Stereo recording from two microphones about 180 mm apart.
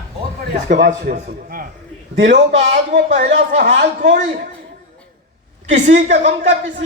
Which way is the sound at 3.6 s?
45° right (ahead or behind).